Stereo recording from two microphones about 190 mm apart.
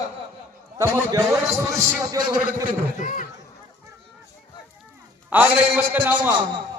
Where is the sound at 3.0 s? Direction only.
45° left (ahead or behind).